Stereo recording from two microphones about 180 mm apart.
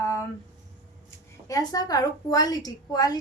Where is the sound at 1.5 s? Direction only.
20° left (ahead or behind).